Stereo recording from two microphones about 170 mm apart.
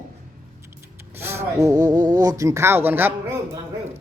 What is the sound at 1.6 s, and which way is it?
Speech, 20° right (ahead or behind).